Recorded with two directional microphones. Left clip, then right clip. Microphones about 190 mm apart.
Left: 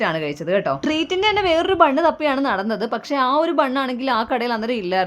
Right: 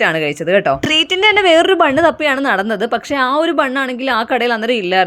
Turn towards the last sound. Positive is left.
turn(degrees=-15)  # may be behind; listen again after turning